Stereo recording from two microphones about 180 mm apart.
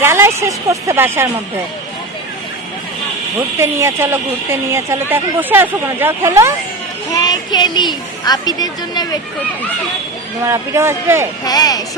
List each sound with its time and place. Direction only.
0.0 s speech: 15° right (ahead or behind)
3.3 s speech: 15° right (ahead or behind)
7.1 s speech: 20° left (ahead or behind)
10.4 s speech: 15° right (ahead or behind)
11.4 s speech: 20° left (ahead or behind)